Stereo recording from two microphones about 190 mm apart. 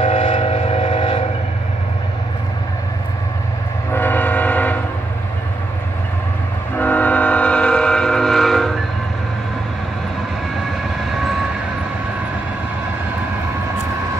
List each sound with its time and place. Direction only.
0.0 s train: 30° left (ahead or behind)
3.9 s train: 10° left (ahead or behind)
6.8 s train: 10° left (ahead or behind)